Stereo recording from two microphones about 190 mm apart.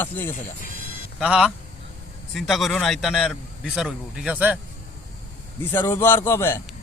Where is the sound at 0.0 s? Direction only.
10° left (ahead or behind).